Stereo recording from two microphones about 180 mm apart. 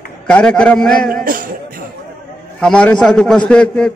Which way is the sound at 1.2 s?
50° right (ahead or behind).